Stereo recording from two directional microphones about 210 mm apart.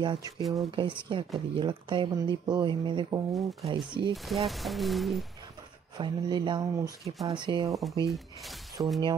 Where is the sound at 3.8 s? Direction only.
20° right (ahead or behind).